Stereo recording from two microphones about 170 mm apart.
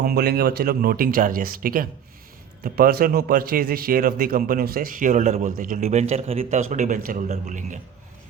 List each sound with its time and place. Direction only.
0.0 s a man's voice: 65° right (ahead or behind); by 7.8 s 45° right (ahead or behind)